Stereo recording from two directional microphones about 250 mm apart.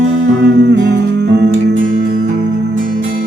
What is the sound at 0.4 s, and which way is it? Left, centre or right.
Music, right.